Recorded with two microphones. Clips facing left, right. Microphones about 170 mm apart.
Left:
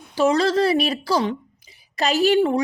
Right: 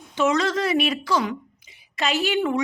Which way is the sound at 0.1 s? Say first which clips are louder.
Left 3 dB; 35° left (ahead or behind).